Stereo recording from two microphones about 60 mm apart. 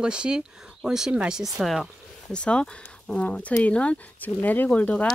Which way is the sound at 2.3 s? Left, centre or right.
Centre.